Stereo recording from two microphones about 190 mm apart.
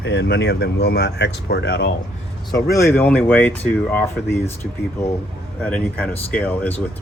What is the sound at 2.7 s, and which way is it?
Speech, 10° left (ahead or behind).